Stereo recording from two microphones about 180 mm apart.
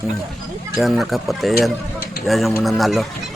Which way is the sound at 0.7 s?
Centre (ahead or behind).